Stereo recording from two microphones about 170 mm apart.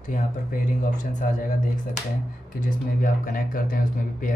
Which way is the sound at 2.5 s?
50° left (ahead or behind).